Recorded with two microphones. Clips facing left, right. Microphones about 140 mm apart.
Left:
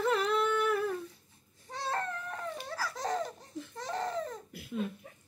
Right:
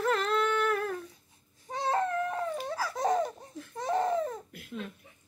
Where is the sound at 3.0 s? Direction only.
20° right (ahead or behind).